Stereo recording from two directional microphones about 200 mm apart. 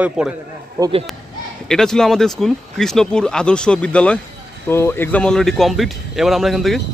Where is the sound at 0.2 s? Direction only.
5° right (ahead or behind).